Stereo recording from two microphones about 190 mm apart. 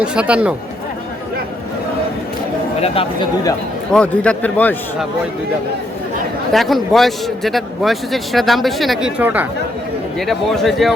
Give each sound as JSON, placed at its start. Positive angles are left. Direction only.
{"t": 0.0, "sound": "a man's voice", "side_deg": -5}
{"t": 2.8, "sound": "speech", "side_deg": 30}
{"t": 3.9, "sound": "a man's voice", "side_deg": 5}
{"t": 6.5, "sound": "a man's voice", "side_deg": 0}
{"t": 10.2, "sound": "a man's voice", "side_deg": 0}